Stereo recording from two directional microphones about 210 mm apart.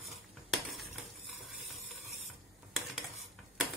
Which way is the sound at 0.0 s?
Centre (ahead or behind).